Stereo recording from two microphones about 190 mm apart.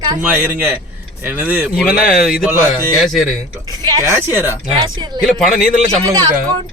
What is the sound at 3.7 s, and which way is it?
Speech, 20° right (ahead or behind).